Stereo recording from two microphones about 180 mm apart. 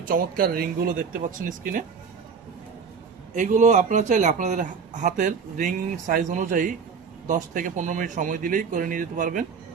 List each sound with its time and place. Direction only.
0.0 s speech: 55° right (ahead or behind)
3.3 s speech: 45° right (ahead or behind)